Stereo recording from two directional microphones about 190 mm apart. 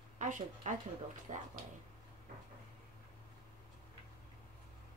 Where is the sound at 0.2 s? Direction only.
40° right (ahead or behind).